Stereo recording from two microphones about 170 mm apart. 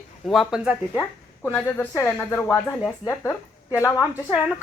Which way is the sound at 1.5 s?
10° left (ahead or behind).